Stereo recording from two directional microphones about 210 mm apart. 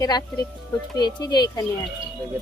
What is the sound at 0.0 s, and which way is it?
Speech, 20° left (ahead or behind).